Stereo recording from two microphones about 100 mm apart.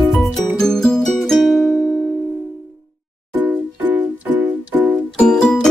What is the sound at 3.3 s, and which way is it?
Music, 20° right (ahead or behind).